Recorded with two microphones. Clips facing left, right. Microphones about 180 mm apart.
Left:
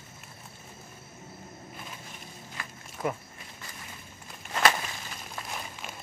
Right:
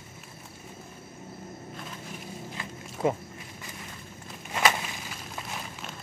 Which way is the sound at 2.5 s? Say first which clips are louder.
Right 4 dB; 25° right (ahead or behind).